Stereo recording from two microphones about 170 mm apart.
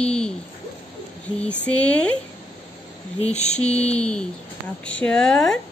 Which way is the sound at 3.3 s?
40° left (ahead or behind).